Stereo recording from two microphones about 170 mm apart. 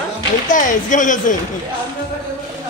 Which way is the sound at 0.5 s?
50° left (ahead or behind).